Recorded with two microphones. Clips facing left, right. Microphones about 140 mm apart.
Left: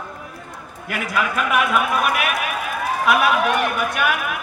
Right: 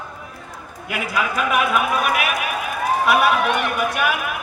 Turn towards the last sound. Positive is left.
turn(degrees=0)  # may be behind; listen again after turning